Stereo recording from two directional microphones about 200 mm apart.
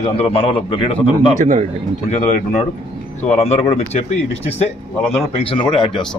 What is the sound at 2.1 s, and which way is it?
A man's voice, 35° left (ahead or behind).